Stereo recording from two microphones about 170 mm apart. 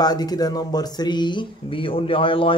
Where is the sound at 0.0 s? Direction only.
25° left (ahead or behind).